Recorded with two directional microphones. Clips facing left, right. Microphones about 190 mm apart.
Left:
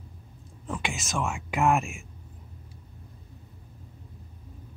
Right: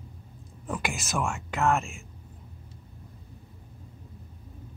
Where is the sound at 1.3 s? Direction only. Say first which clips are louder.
Left 3 dB; 15° left (ahead or behind).